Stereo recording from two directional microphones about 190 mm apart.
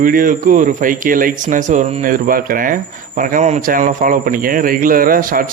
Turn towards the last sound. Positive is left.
turn(degrees=-50)  # may be behind; listen again after turning